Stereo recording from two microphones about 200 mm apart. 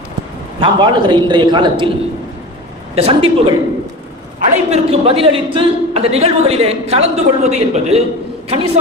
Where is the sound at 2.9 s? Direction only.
30° right (ahead or behind).